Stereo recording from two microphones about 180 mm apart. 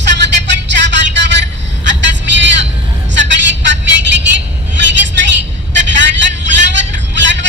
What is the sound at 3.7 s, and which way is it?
Vehicle, 80° right.